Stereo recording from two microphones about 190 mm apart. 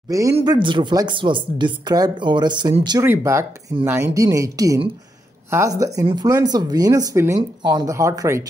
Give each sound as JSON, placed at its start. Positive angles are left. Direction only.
{"t": 0.1, "sound": "speech", "side_deg": -20}